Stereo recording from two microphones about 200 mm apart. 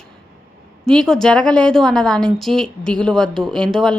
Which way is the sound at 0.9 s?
5° left (ahead or behind).